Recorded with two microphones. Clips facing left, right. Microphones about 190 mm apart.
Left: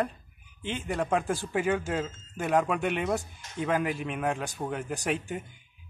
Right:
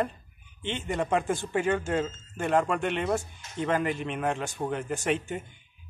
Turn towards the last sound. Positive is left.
turn(degrees=5)  # may be behind; listen again after turning